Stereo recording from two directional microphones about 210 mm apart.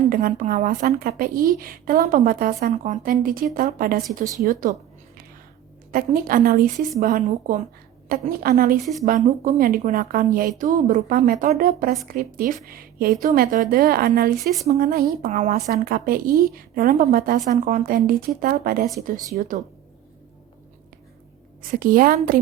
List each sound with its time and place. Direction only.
0.1 s a woman's voice: 45° right (ahead or behind)
5.9 s a woman's voice: 40° right (ahead or behind)
8.8 s speech: centre (ahead or behind)
9.0 s a woman's voice: 40° right (ahead or behind)
14.3 s speech: centre (ahead or behind)
14.8 s a woman's voice: 45° right (ahead or behind)
19.4 s a woman's voice: 35° right (ahead or behind)
21.6 s a woman's voice: 40° right (ahead or behind)